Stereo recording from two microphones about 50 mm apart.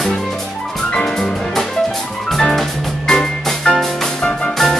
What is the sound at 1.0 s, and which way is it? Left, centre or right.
Music, centre.